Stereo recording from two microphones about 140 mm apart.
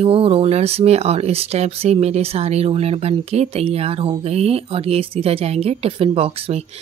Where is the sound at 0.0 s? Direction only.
40° right (ahead or behind).